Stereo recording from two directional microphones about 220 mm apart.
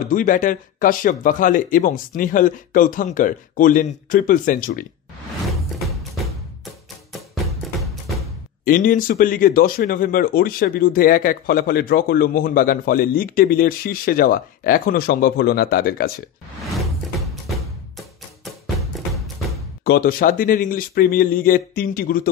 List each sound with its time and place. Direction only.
0.0 s speech: 35° left (ahead or behind)
7.8 s music: centre (ahead or behind)
8.6 s speech: 40° left (ahead or behind)
18.9 s music: centre (ahead or behind)
19.8 s speech: 45° left (ahead or behind)